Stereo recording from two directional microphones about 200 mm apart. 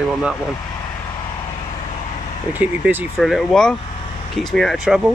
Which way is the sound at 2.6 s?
5° right (ahead or behind).